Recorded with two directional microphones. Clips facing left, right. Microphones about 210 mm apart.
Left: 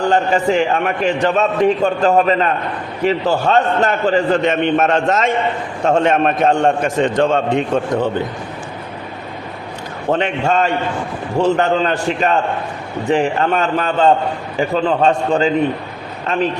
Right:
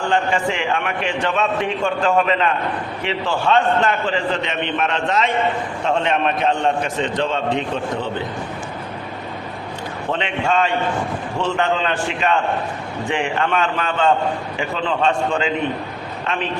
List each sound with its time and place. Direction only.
0.0 s a man's voice: 40° left (ahead or behind)
10.1 s a man's voice: 45° left (ahead or behind)